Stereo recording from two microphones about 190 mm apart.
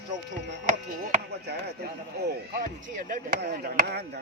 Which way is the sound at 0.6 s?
45° right (ahead or behind).